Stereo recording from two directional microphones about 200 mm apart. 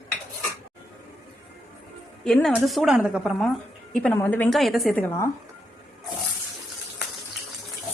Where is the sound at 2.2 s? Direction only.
Centre (ahead or behind).